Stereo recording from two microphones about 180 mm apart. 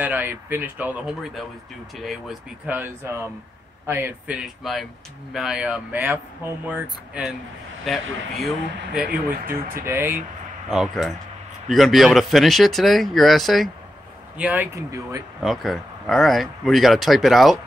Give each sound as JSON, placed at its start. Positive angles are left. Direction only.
{"t": 0.0, "sound": "speech", "side_deg": -10}
{"t": 9.5, "sound": "speech", "side_deg": -50}
{"t": 9.8, "sound": "speech", "side_deg": -10}
{"t": 14.4, "sound": "speech", "side_deg": -10}
{"t": 15.4, "sound": "speech", "side_deg": 0}